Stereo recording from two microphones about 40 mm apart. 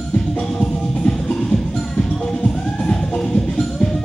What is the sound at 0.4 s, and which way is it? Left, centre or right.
Music, centre.